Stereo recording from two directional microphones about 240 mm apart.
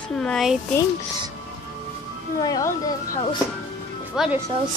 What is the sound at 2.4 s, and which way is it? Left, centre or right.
Speech, centre.